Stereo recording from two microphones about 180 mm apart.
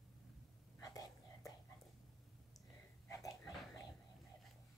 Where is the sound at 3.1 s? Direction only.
20° left (ahead or behind).